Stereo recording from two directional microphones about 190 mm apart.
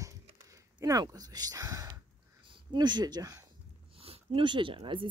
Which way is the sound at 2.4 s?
25° right (ahead or behind).